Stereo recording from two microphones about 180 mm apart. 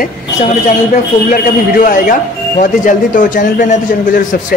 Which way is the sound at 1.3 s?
50° left (ahead or behind).